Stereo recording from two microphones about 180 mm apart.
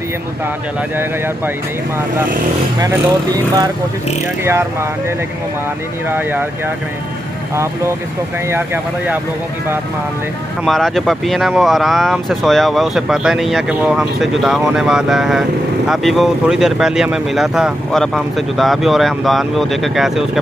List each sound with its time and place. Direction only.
2.8 s speech: 20° right (ahead or behind)
6.0 s speech: 10° right (ahead or behind)
8.5 s speech: 10° right (ahead or behind)
10.6 s speech: centre (ahead or behind)